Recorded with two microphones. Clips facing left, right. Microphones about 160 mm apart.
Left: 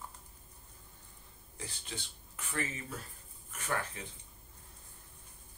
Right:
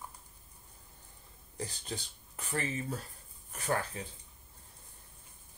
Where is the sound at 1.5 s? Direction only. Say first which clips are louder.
Right 5 dB; 40° right (ahead or behind).